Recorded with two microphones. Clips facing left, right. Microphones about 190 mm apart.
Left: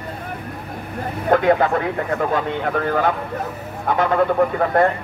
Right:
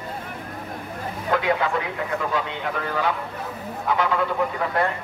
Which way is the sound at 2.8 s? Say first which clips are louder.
Left 5 dB; 50° left (ahead or behind).